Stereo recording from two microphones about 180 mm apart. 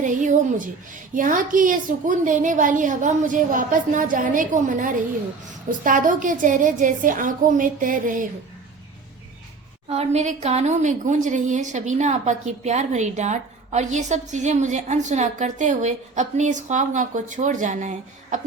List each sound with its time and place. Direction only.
0.0 s a woman's voice: 45° right (ahead or behind)
9.9 s a woman's voice: 35° right (ahead or behind)